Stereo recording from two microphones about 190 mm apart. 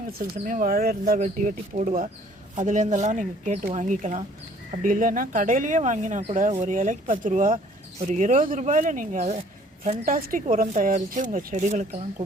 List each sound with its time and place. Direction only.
0.1 s speech: 45° right (ahead or behind)